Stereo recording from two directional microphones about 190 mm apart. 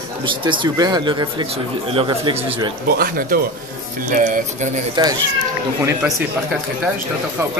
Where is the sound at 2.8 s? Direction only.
50° right (ahead or behind).